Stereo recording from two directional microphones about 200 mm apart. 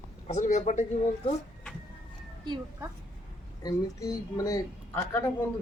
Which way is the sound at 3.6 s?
15° left (ahead or behind).